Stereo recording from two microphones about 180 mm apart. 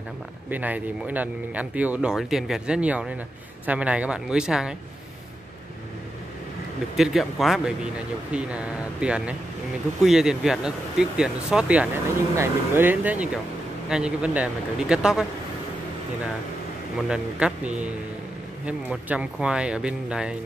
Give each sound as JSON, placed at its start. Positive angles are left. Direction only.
{"t": 0.5, "sound": "speech", "side_deg": -10}
{"t": 7.0, "sound": "speech", "side_deg": 0}
{"t": 17.1, "sound": "speech", "side_deg": -5}